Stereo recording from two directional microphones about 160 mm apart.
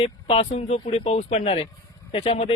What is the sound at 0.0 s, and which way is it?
Speech, 35° left (ahead or behind).